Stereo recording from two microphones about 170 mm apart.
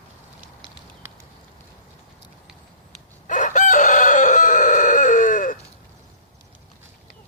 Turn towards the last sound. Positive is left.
turn(degrees=50)  # may be behind; listen again after turning